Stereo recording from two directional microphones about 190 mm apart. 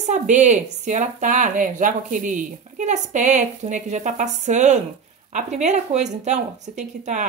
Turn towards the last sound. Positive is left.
turn(degrees=-40)  # may be behind; listen again after turning